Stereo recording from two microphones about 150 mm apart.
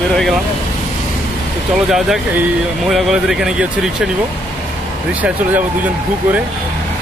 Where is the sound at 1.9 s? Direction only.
5° right (ahead or behind).